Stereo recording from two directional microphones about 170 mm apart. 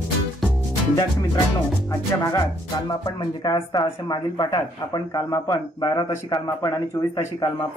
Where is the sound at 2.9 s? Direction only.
20° left (ahead or behind).